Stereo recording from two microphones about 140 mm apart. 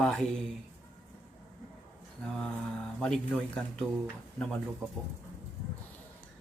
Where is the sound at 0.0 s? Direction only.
5° left (ahead or behind).